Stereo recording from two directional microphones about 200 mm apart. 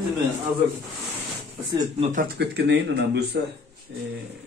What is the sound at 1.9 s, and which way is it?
Speech, 35° right (ahead or behind).